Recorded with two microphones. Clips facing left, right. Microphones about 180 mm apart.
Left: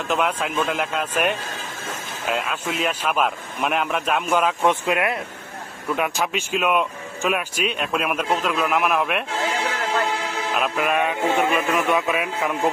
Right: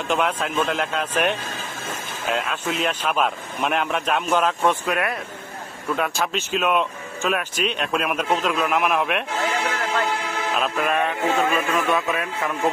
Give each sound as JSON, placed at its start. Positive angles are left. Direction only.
{"t": 0.1, "sound": "speech", "side_deg": 5}
{"t": 4.6, "sound": "speech", "side_deg": 20}
{"t": 6.1, "sound": "speech", "side_deg": 5}
{"t": 10.5, "sound": "a man's voice", "side_deg": 5}
{"t": 11.1, "sound": "a man's voice", "side_deg": 20}